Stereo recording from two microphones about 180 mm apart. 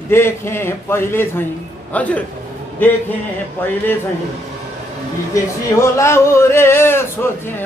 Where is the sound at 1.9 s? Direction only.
10° left (ahead or behind).